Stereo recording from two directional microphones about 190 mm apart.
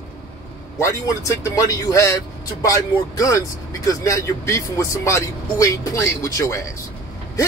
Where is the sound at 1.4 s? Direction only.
15° left (ahead or behind).